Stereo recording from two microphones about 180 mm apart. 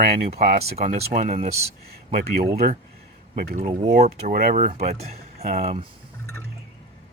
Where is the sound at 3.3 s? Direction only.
50° right (ahead or behind).